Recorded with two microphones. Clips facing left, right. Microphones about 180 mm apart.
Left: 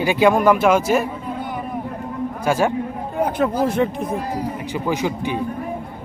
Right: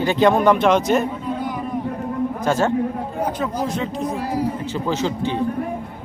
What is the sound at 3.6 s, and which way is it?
Speech, 55° left (ahead or behind).